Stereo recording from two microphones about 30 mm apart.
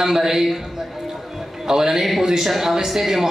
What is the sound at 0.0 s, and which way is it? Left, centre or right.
A man's voice, centre.